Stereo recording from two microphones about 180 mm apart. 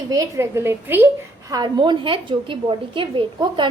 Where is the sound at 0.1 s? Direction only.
15° right (ahead or behind).